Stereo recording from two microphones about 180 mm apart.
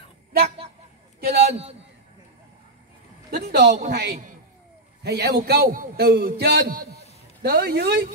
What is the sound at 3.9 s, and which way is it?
Speech, 60° right (ahead or behind).